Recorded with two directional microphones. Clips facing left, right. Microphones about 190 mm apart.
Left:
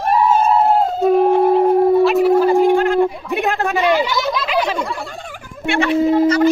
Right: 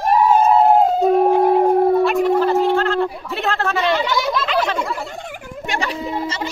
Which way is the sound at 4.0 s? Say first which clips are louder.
Left 1 dB; centre (ahead or behind).